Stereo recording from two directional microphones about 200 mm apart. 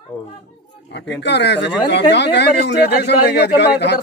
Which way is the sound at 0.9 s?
60° left (ahead or behind).